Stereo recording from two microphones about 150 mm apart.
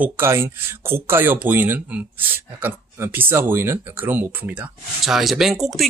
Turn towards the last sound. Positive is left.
turn(degrees=0)  # may be behind; listen again after turning